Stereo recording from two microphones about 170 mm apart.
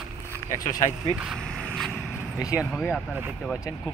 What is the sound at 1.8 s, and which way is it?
Vehicle, centre (ahead or behind).